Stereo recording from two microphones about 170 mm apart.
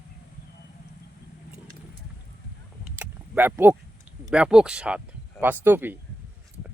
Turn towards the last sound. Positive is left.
turn(degrees=-10)  # may be behind; listen again after turning